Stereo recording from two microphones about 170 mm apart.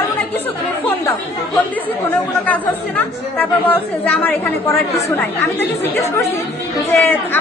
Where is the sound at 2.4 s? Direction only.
10° left (ahead or behind).